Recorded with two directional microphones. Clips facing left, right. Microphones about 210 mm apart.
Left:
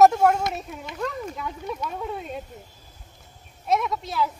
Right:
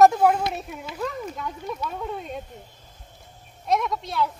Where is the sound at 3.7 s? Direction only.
Centre (ahead or behind).